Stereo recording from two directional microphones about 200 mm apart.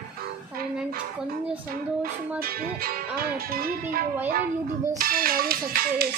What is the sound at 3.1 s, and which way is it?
Speech, 45° right (ahead or behind).